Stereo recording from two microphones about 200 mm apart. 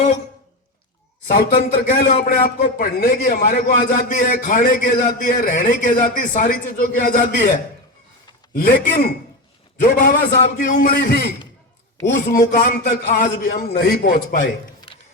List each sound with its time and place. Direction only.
1.3 s a man's voice: 40° left (ahead or behind)
8.5 s a man's voice: 45° left (ahead or behind)
12.3 s a man's voice: 40° left (ahead or behind)